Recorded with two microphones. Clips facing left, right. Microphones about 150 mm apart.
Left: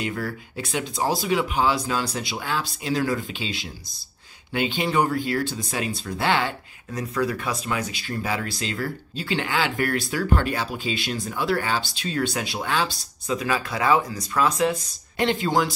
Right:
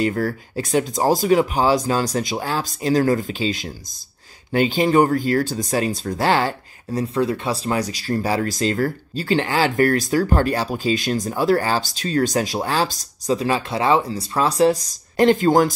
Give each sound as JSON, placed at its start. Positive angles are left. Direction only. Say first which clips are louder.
{"t": 0.0, "sound": "speech", "louder": "right 8 dB", "side_deg": -40}